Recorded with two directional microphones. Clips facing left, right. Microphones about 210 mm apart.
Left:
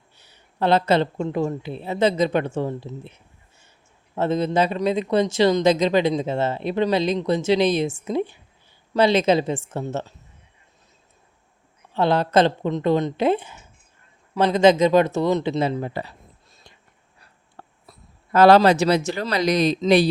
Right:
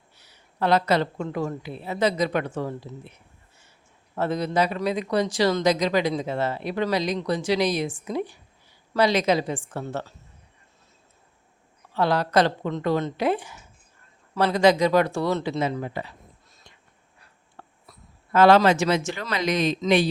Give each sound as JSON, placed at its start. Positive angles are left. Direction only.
{"t": 0.2, "sound": "speech", "side_deg": 25}
{"t": 11.9, "sound": "speech", "side_deg": 25}
{"t": 16.7, "sound": "whispering", "side_deg": 35}
{"t": 17.6, "sound": "speech", "side_deg": 35}